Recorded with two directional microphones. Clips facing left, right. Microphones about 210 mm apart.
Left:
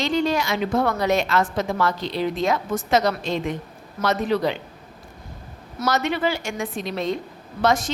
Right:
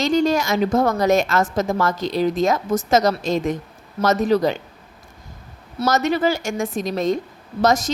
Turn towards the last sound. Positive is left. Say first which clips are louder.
# right 3 dB
turn(degrees=-40)  # may be behind; listen again after turning